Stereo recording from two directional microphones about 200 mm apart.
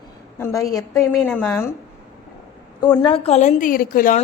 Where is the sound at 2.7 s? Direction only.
20° left (ahead or behind); by 4.2 s 45° left (ahead or behind).